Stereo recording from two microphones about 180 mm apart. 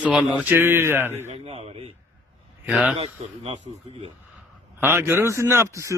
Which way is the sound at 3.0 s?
35° right (ahead or behind).